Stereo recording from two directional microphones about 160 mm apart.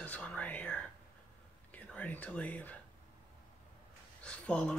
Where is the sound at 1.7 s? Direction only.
10° left (ahead or behind).